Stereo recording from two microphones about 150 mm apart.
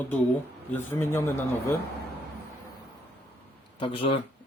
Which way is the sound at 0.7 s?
15° left (ahead or behind).